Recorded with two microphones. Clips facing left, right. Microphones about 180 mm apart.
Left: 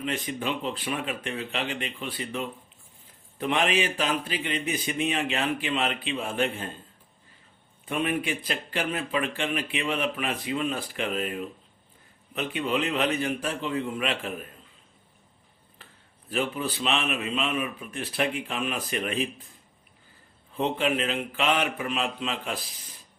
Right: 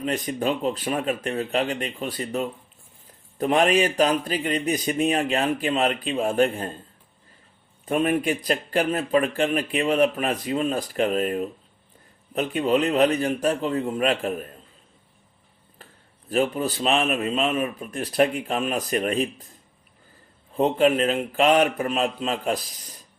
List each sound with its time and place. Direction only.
0.0 s a man's voice: 40° right (ahead or behind)
7.9 s a man's voice: 40° right (ahead or behind)
16.3 s a man's voice: 45° right (ahead or behind)
20.6 s a man's voice: 45° right (ahead or behind)